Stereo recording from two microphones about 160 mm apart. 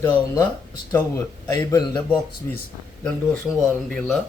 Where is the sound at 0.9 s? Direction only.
20° left (ahead or behind).